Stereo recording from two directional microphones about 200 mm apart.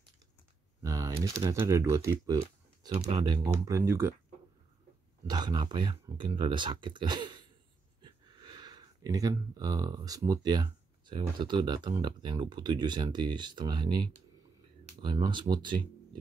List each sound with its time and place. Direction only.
0.8 s speech: 15° right (ahead or behind)
5.2 s speech: 20° right (ahead or behind)